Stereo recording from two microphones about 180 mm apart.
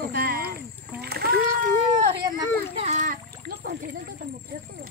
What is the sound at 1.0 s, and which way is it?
Splash, 60° right (ahead or behind).